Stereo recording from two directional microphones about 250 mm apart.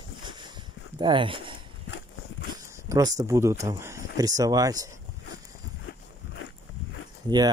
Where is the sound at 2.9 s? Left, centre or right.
Centre.